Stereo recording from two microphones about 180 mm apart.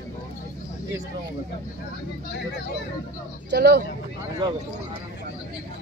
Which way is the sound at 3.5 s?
65° right (ahead or behind).